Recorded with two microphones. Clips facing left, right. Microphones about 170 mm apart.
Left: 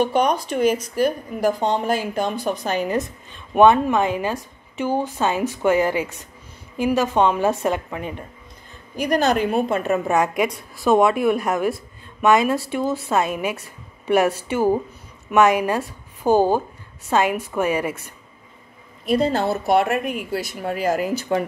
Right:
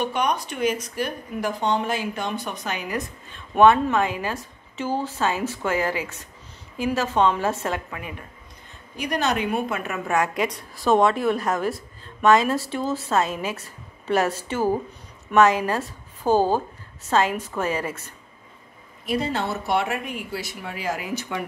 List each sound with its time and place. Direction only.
0.1 s a woman's voice: 35° left (ahead or behind)
9.0 s a woman's voice: 40° left (ahead or behind); by 18.1 s 10° left (ahead or behind)
19.0 s speech: 40° left (ahead or behind)